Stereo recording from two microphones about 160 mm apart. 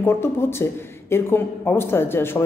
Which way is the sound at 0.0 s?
15° left (ahead or behind).